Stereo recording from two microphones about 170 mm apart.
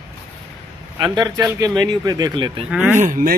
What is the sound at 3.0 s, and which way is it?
Speech, 55° right (ahead or behind).